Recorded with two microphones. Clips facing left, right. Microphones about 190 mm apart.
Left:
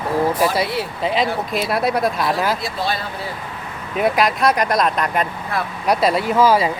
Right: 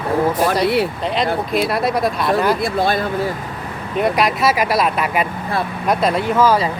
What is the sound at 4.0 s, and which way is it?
Speech, centre (ahead or behind).